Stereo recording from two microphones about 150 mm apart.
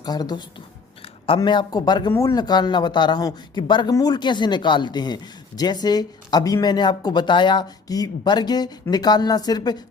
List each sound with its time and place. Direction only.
0.0 s speech: 25° left (ahead or behind)